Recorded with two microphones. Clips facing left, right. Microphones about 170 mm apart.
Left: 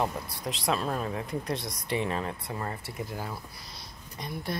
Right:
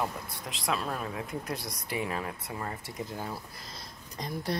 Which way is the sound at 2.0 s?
10° right (ahead or behind).